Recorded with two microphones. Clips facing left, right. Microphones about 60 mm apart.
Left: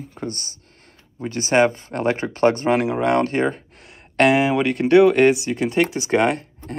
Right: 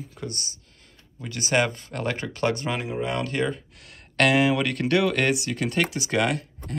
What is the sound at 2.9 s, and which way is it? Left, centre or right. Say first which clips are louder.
Speech: left 9 dB; left.